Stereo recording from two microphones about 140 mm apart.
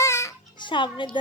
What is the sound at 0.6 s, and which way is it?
Music, 35° left (ahead or behind).